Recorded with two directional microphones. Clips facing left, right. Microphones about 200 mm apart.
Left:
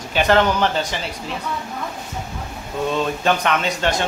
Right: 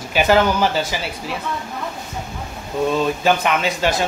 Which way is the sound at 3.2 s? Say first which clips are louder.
Right 1 dB; 5° right (ahead or behind).